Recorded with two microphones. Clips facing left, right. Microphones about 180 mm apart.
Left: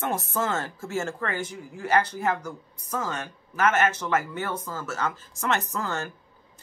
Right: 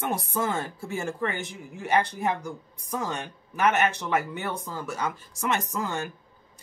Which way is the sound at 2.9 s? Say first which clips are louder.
Even; 15° right (ahead or behind).